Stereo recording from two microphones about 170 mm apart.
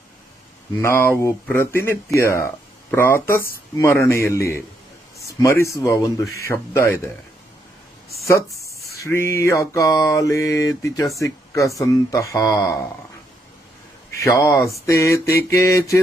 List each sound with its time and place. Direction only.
0.7 s mantra: 15° left (ahead or behind)
2.1 s speech: 15° left (ahead or behind)
3.7 s mantra: 15° left (ahead or behind)
5.4 s mantra: 20° left (ahead or behind)
8.8 s mantra: 20° left (ahead or behind)
14.2 s mantra: 20° left (ahead or behind)